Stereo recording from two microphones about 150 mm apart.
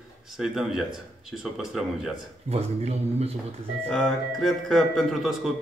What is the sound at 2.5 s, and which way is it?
Speech, 45° right (ahead or behind).